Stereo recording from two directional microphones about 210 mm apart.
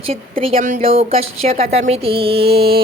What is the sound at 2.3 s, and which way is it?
Mantra, 50° right (ahead or behind).